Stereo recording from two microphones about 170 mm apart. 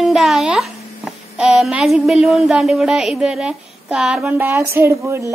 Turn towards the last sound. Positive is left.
turn(degrees=-15)  # may be behind; listen again after turning